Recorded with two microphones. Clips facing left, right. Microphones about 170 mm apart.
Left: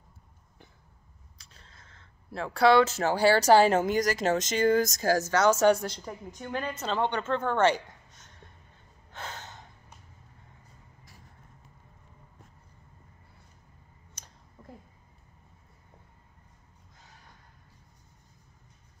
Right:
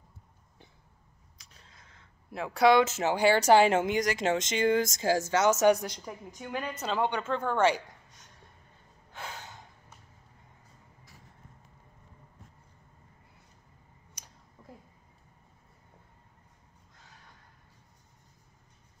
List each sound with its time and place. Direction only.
1.4 s speech: 15° right (ahead or behind)
4.6 s speech: 40° left (ahead or behind)
4.8 s a woman's voice: 25° right (ahead or behind)
9.1 s gasp: 10° right (ahead or behind)
14.6 s a sound: 5° left (ahead or behind)